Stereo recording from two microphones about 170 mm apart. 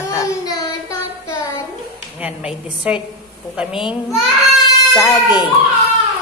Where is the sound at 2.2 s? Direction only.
5° right (ahead or behind).